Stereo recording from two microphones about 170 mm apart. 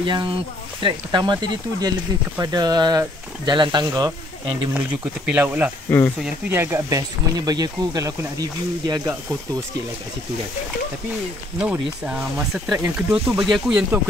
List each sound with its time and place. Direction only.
0.0 s speech: 30° right (ahead or behind)
4.7 s speech: 5° right (ahead or behind)
5.9 s speech: 10° left (ahead or behind)
6.2 s speech: 15° right (ahead or behind)
11.5 s speech: 5° right (ahead or behind)